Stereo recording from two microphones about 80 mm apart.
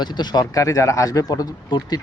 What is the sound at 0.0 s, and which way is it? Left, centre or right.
Speech, left.